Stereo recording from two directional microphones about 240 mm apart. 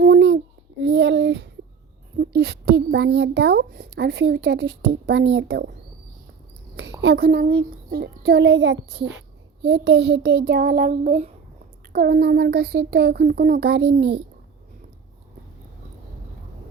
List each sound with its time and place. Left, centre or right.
0.0 s a sound: right
2.1 s speech: right
7.0 s a child's voice: right
11.9 s a child's voice: right